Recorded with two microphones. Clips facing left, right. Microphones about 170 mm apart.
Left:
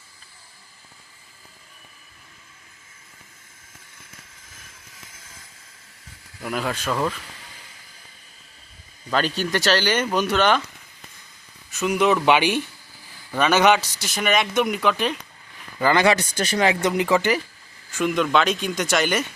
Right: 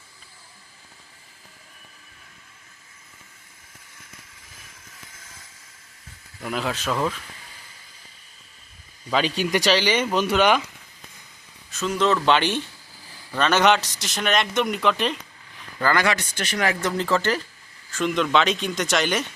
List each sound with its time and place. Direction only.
6.4 s speech: centre (ahead or behind)
9.0 s speech: centre (ahead or behind)
10.2 s speech: 10° right (ahead or behind)
11.7 s speech: 10° left (ahead or behind)
15.8 s speech: 20° left (ahead or behind)
16.1 s speech: 35° left (ahead or behind)
16.6 s speech: 20° left (ahead or behind); by 19.2 s centre (ahead or behind)